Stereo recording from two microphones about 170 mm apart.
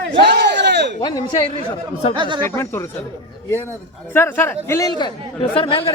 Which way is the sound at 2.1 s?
30° right (ahead or behind).